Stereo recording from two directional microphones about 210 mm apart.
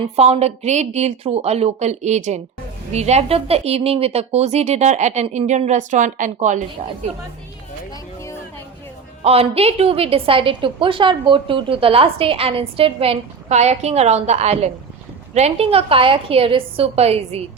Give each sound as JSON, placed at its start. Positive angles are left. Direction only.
{"t": 0.0, "sound": "a woman's voice", "side_deg": -30}
{"t": 9.2, "sound": "a woman's voice", "side_deg": -30}